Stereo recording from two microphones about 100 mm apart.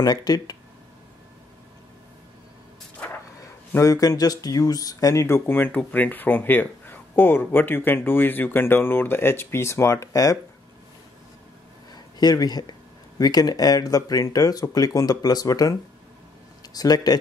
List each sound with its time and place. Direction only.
0.0 s speech: 40° left (ahead or behind)
3.7 s speech: 30° left (ahead or behind)
11.9 s a sound: 40° left (ahead or behind)
13.2 s speech: 40° left (ahead or behind)